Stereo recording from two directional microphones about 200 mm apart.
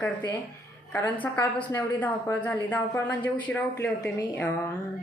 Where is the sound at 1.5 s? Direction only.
20° left (ahead or behind).